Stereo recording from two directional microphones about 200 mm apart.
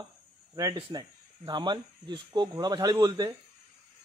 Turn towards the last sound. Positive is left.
turn(degrees=-20)  # may be behind; listen again after turning